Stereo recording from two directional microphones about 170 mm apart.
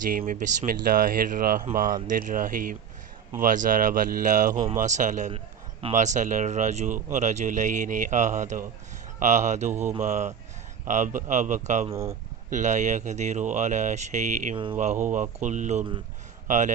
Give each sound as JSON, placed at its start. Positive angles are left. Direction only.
{"t": 0.0, "sound": "speech", "side_deg": -55}